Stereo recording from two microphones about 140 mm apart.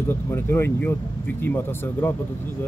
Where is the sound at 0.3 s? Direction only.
15° left (ahead or behind).